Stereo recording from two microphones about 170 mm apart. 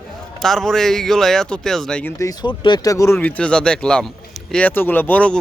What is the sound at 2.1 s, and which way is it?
Speech, 20° left (ahead or behind).